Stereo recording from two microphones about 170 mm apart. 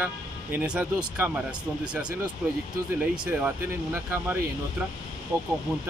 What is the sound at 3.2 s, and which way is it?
Speech, 10° right (ahead or behind).